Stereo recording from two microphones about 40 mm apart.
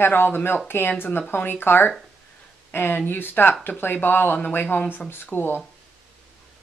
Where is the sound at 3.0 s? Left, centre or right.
Left.